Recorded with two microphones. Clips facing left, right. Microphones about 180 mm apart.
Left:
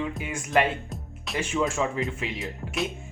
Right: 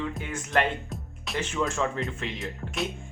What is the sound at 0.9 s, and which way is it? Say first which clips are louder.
Music: left 1 dB; centre (ahead or behind).